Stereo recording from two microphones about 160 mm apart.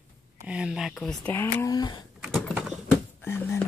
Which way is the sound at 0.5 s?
5° right (ahead or behind).